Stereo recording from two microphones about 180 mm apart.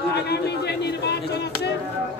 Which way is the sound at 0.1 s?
65° left (ahead or behind).